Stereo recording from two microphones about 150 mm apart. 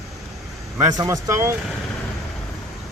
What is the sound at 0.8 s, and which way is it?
Speech, 25° right (ahead or behind).